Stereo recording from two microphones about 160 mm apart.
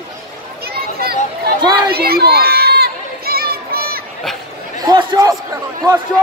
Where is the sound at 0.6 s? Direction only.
75° right (ahead or behind).